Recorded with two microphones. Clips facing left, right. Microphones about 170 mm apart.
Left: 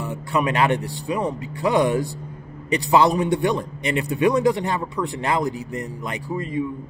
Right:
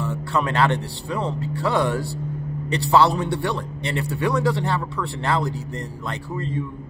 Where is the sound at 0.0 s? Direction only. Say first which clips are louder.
Left 1 dB; 15° left (ahead or behind).